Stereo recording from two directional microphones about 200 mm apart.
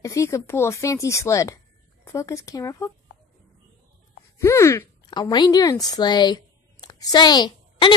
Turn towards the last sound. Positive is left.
turn(degrees=25)  # may be behind; listen again after turning